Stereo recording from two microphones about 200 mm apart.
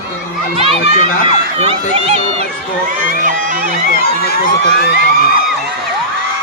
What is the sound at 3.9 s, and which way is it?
Speech, 50° left (ahead or behind).